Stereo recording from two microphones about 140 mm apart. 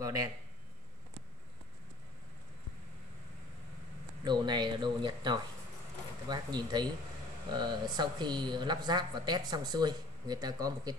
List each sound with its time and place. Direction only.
0.0 s speech: 25° right (ahead or behind)
4.2 s speech: 30° right (ahead or behind)